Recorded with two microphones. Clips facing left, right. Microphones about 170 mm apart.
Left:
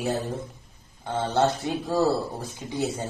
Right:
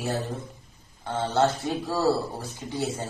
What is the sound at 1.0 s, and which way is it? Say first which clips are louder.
A man's voice: even; 15° left (ahead or behind).